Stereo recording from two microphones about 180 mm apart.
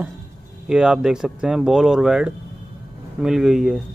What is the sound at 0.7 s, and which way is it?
Speech, 5° right (ahead or behind).